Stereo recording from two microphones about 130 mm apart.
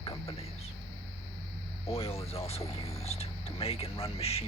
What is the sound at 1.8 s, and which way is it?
Speech, 50° left (ahead or behind).